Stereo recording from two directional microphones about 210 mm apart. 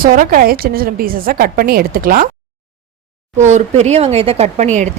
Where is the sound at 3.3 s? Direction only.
35° right (ahead or behind).